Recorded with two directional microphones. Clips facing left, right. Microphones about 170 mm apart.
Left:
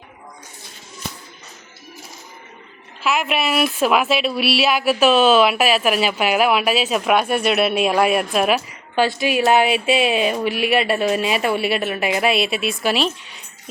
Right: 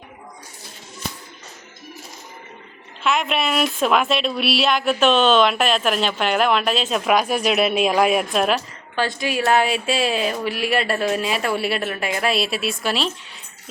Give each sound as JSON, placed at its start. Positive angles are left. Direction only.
{"t": 3.0, "sound": "a woman's voice", "side_deg": 5}
{"t": 9.6, "sound": "speech", "side_deg": 65}
{"t": 10.0, "sound": "a woman's voice", "side_deg": 5}